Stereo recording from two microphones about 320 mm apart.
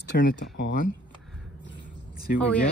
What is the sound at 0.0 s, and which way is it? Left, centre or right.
Speech, left.